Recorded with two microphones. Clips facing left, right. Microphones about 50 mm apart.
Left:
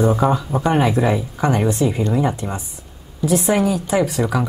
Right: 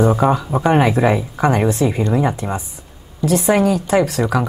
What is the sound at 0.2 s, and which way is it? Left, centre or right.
Speech, centre.